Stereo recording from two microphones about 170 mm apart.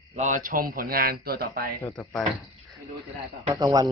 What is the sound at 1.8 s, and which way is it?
Speech, 15° left (ahead or behind).